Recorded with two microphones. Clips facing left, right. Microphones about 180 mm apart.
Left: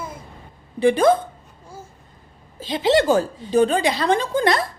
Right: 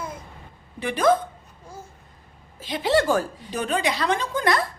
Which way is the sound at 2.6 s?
25° left (ahead or behind).